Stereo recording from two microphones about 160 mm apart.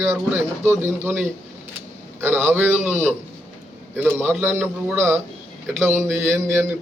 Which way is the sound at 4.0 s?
15° right (ahead or behind).